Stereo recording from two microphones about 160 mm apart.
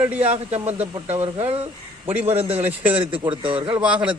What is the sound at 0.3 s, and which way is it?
Speech, 40° right (ahead or behind).